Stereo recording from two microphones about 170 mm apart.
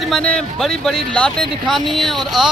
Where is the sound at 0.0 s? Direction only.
5° left (ahead or behind).